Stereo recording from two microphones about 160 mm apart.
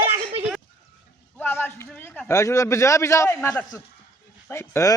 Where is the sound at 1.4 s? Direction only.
10° left (ahead or behind).